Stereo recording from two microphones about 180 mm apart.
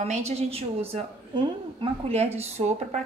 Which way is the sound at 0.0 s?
35° right (ahead or behind).